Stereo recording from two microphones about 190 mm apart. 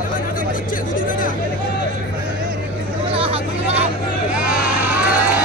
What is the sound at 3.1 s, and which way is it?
Hubbub, 35° right (ahead or behind).